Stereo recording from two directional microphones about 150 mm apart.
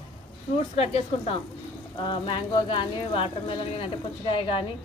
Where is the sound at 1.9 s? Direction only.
35° left (ahead or behind).